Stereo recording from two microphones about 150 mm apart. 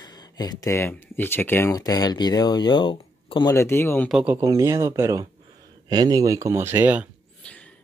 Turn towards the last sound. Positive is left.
turn(degrees=10)  # may be behind; listen again after turning